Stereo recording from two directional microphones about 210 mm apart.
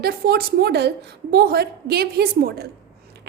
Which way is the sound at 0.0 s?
45° right (ahead or behind).